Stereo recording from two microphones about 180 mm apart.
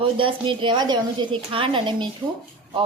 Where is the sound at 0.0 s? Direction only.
30° right (ahead or behind).